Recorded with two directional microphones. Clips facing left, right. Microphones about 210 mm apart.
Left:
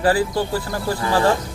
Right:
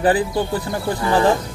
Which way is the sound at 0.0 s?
20° right (ahead or behind).